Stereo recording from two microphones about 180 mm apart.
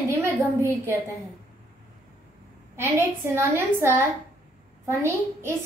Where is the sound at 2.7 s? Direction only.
15° right (ahead or behind).